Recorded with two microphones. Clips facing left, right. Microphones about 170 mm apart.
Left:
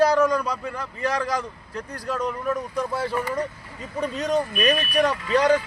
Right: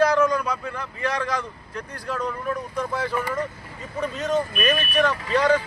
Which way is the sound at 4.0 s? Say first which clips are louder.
Even; 40° left (ahead or behind).